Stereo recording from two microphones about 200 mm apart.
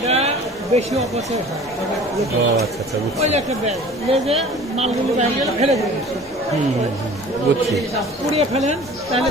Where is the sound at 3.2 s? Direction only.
35° right (ahead or behind).